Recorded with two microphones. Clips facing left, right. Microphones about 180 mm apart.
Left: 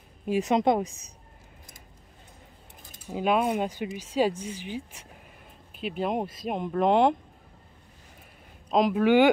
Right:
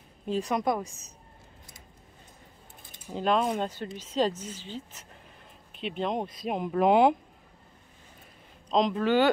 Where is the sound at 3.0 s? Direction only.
10° left (ahead or behind).